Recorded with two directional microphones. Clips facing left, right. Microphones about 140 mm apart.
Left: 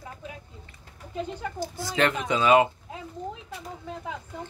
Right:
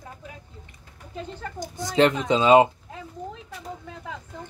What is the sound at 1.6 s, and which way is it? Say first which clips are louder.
Speech: right 6 dB; 20° right (ahead or behind).